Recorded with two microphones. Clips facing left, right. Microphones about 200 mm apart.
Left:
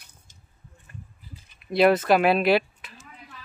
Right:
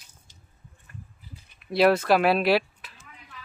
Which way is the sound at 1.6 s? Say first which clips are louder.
Left 1 dB; centre (ahead or behind).